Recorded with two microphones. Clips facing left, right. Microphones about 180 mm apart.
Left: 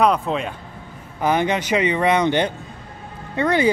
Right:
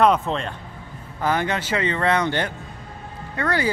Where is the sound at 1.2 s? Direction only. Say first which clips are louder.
Left 3 dB; 20° left (ahead or behind).